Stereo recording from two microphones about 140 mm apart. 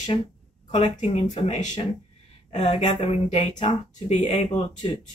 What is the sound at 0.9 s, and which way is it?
Speech, 55° left (ahead or behind).